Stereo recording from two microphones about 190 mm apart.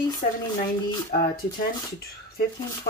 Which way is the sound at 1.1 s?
50° left (ahead or behind).